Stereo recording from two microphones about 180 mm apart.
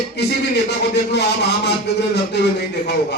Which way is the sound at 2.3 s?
70° left (ahead or behind).